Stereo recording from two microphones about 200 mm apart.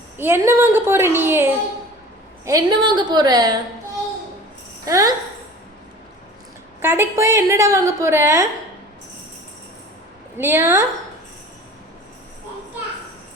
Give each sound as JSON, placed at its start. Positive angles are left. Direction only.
{"t": 0.2, "sound": "a woman's voice", "side_deg": -10}
{"t": 4.9, "sound": "a woman's voice", "side_deg": -15}
{"t": 6.8, "sound": "a woman's voice", "side_deg": -10}
{"t": 10.3, "sound": "a woman's voice", "side_deg": -10}